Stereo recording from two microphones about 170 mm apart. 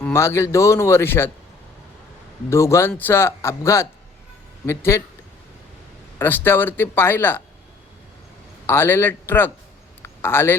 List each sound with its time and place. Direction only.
0.0 s speech: 15° left (ahead or behind)
2.5 s speech: 15° left (ahead or behind)
6.1 s speech: 10° left (ahead or behind)
8.6 s speech: 15° left (ahead or behind)
10.0 s a sound: 15° left (ahead or behind)